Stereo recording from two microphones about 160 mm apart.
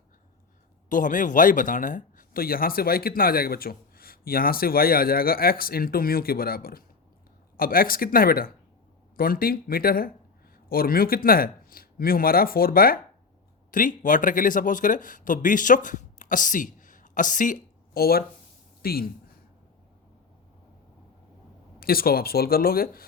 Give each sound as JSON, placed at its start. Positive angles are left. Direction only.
{"t": 0.9, "sound": "a man's voice", "side_deg": 55}
{"t": 18.8, "sound": "a sound", "side_deg": 70}
{"t": 21.8, "sound": "a man's voice", "side_deg": 70}